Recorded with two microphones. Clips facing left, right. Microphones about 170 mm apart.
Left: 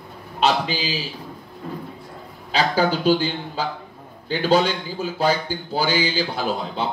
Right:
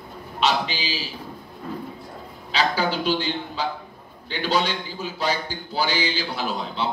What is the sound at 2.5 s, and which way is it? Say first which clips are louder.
A man's voice: left 3 dB; 45° left (ahead or behind).